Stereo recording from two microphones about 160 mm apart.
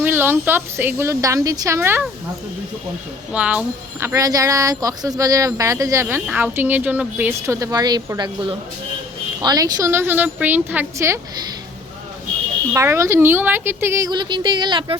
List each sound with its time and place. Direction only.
0.0 s a woman's voice: 15° right (ahead or behind)
3.3 s a woman's voice: 10° right (ahead or behind)
4.1 s a woman's voice: 20° right (ahead or behind)
12.7 s a woman's voice: 15° right (ahead or behind)